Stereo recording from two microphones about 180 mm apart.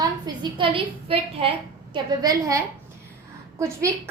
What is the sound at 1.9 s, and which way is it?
Speech, 20° right (ahead or behind).